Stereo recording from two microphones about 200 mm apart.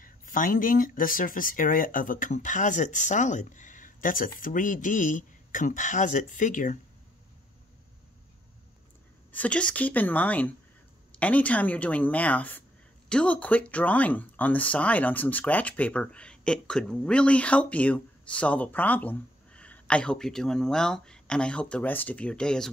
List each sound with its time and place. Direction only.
0.0 s speech: 45° left (ahead or behind)
9.3 s speech: 5° left (ahead or behind)